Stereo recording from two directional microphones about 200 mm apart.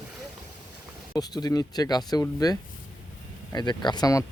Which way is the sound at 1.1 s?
20° left (ahead or behind).